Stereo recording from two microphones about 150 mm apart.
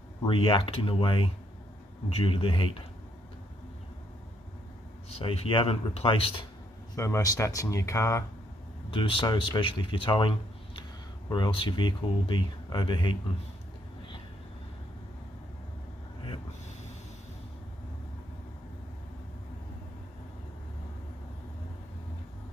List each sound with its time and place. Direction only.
0.2 s speech: 35° left (ahead or behind)
5.1 s speech: 45° left (ahead or behind)
7.0 s speech: 20° left (ahead or behind)
8.9 s speech: 35° left (ahead or behind)